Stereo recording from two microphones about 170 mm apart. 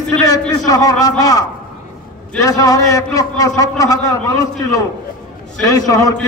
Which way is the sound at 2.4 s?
20° left (ahead or behind).